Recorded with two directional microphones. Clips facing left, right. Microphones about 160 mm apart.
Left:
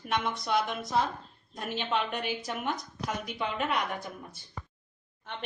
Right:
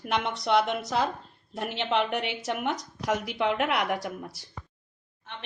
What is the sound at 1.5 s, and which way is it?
Speech, 70° right (ahead or behind).